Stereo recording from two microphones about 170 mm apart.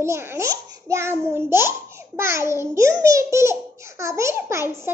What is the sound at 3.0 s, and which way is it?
Baby laughter, 20° right (ahead or behind).